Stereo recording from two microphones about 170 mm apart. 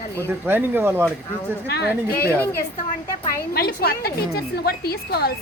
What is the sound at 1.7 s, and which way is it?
Speech, 75° left (ahead or behind).